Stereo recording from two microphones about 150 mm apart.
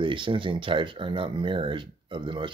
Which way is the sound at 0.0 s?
35° right (ahead or behind).